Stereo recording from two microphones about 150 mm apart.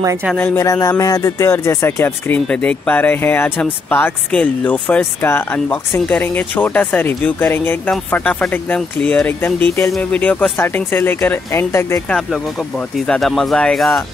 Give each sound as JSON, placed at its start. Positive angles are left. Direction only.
{"t": 0.0, "sound": "speech", "side_deg": -20}
{"t": 0.4, "sound": "speech", "side_deg": 10}
{"t": 0.7, "sound": "speech", "side_deg": 20}
{"t": 13.0, "sound": "speech", "side_deg": 5}